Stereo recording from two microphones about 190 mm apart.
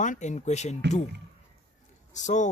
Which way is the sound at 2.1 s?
40° left (ahead or behind).